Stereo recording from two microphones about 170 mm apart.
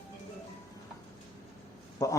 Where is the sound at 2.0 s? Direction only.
20° left (ahead or behind).